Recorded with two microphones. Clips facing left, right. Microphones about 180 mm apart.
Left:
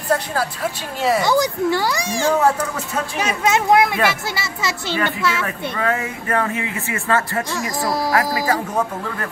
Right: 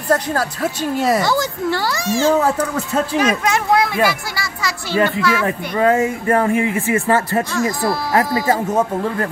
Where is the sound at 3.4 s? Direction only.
20° left (ahead or behind).